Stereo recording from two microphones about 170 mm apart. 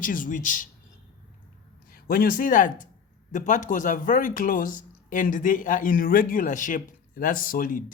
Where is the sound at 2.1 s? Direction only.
55° left (ahead or behind).